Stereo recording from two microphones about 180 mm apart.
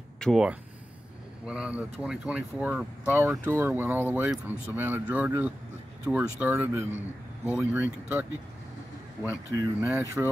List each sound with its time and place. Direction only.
0.2 s speech: centre (ahead or behind)